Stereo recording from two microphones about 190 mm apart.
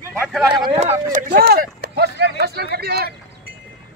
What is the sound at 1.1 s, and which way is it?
Speech, 50° right (ahead or behind).